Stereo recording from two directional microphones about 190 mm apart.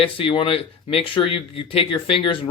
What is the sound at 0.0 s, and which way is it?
Speech, 30° left (ahead or behind).